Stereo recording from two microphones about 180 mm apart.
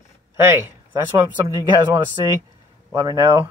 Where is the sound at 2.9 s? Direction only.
20° right (ahead or behind).